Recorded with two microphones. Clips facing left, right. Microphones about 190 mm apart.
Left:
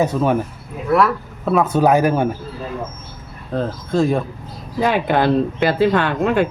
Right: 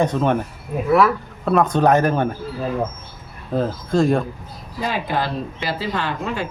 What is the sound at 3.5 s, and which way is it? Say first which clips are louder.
Speech: even; centre (ahead or behind).